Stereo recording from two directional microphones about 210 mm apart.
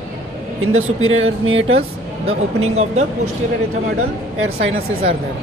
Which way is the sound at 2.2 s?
30° right (ahead or behind).